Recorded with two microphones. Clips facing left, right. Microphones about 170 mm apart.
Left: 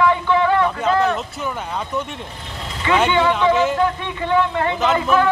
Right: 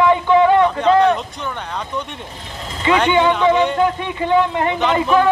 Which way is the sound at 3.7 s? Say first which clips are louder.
Right 2 dB; 15° right (ahead or behind).